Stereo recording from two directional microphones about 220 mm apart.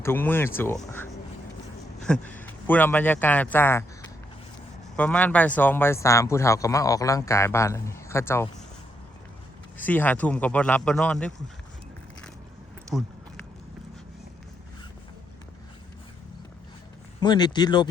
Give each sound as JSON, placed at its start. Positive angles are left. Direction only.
{"t": 0.0, "sound": "speech", "side_deg": 10}
{"t": 4.9, "sound": "speech", "side_deg": 5}
{"t": 9.7, "sound": "speech", "side_deg": 10}
{"t": 12.9, "sound": "speech", "side_deg": 0}
{"t": 17.2, "sound": "speech", "side_deg": 20}